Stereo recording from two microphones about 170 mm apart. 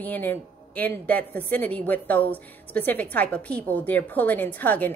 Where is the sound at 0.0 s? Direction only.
10° left (ahead or behind).